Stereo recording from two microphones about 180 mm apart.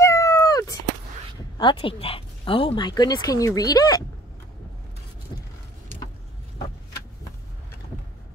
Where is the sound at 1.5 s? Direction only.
30° left (ahead or behind).